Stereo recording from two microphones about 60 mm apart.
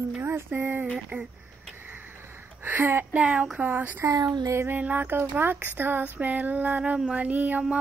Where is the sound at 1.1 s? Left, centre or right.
Right.